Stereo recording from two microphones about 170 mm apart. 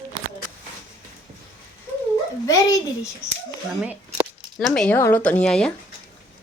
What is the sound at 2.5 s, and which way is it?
Speech, 20° left (ahead or behind).